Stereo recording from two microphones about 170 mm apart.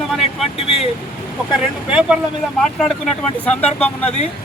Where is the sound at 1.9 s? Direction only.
5° right (ahead or behind).